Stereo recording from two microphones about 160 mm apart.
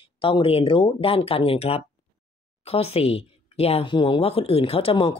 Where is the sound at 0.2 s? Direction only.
35° left (ahead or behind).